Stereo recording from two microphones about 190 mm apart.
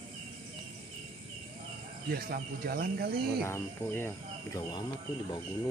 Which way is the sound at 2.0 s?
55° right (ahead or behind).